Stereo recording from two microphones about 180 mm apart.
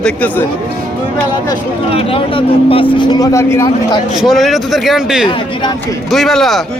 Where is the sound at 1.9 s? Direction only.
30° left (ahead or behind); by 4.0 s 15° left (ahead or behind).